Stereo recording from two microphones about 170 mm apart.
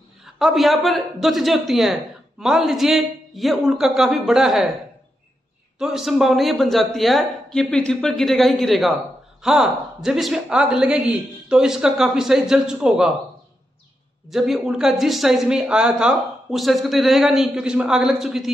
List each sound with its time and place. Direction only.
0.2 s a woman's voice: centre (ahead or behind)
5.8 s a woman's voice: centre (ahead or behind)
14.3 s a woman's voice: centre (ahead or behind)